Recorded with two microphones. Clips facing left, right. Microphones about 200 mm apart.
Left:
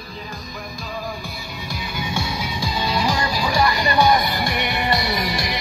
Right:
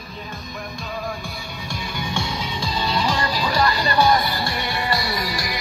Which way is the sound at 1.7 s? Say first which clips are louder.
Left 1 dB; 5° left (ahead or behind).